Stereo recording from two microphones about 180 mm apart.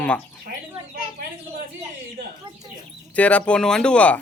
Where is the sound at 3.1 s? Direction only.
5° left (ahead or behind).